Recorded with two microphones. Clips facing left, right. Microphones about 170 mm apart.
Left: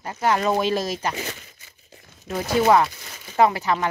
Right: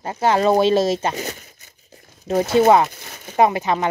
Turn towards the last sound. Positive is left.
turn(degrees=-20)  # may be behind; listen again after turning